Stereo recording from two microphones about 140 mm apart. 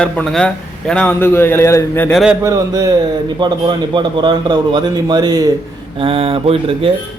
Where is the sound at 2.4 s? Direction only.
25° right (ahead or behind).